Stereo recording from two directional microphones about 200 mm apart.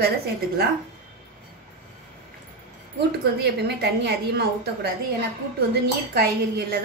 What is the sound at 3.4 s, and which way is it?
A woman's voice, 55° right (ahead or behind).